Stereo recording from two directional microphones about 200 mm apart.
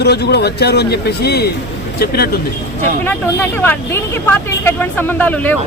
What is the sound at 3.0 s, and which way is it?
Speech, 10° left (ahead or behind).